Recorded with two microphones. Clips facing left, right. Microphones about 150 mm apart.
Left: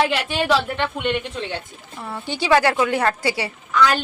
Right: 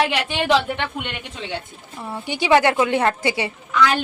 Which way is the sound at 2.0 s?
15° right (ahead or behind).